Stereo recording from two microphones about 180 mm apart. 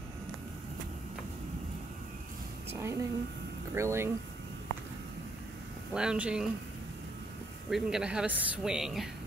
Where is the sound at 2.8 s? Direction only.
15° right (ahead or behind).